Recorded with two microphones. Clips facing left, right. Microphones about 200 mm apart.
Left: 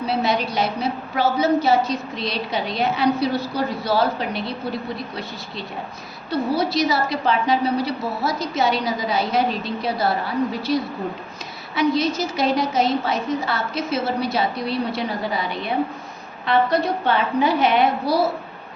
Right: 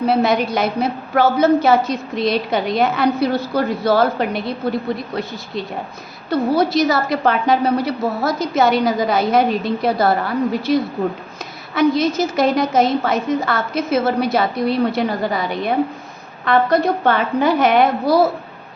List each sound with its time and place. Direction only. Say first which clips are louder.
0.0 s a woman's voice: right 6 dB; 50° right (ahead or behind)
6.3 s a woman's voice: right 5 dB; 50° right (ahead or behind)